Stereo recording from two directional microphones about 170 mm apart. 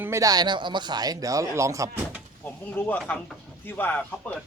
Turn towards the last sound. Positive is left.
turn(degrees=10)  # may be behind; listen again after turning